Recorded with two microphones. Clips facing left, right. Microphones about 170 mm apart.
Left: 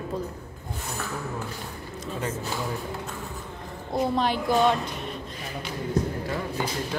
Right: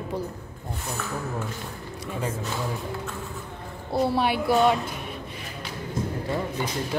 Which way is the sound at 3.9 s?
5° right (ahead or behind).